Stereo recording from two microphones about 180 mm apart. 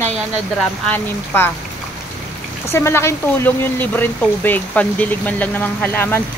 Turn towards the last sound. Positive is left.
turn(degrees=10)  # may be behind; listen again after turning